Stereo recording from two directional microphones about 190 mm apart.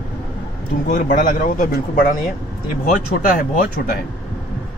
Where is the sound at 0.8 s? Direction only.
45° left (ahead or behind).